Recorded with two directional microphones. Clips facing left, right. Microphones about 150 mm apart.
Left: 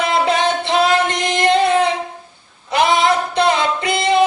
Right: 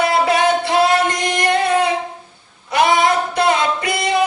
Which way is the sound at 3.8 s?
25° left (ahead or behind).